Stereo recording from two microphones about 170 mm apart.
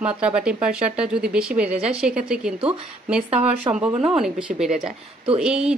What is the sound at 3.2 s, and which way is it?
Speech, 35° right (ahead or behind).